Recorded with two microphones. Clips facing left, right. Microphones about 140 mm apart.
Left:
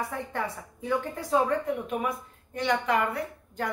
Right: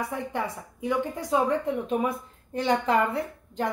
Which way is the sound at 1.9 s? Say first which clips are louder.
Right 4 dB; 30° right (ahead or behind).